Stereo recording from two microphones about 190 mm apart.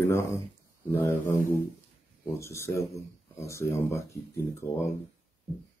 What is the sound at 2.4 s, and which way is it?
Speech, 15° left (ahead or behind).